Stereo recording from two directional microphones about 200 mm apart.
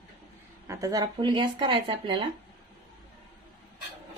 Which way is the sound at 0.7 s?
15° right (ahead or behind).